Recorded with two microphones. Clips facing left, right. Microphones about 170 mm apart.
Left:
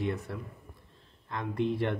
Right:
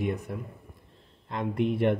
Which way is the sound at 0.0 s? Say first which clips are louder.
Right 3 dB; 15° right (ahead or behind).